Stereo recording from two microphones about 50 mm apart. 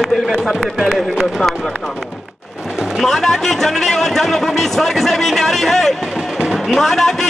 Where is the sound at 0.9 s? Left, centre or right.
Centre.